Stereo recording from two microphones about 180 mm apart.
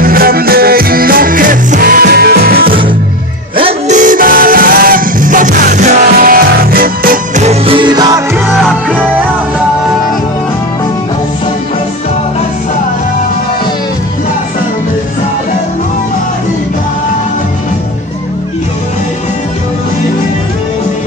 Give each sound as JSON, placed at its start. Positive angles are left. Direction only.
{"t": 0.0, "sound": "music", "side_deg": -55}
{"t": 3.5, "sound": "music", "side_deg": -35}
{"t": 7.4, "sound": "music", "side_deg": -30}
{"t": 8.5, "sound": "music", "side_deg": 0}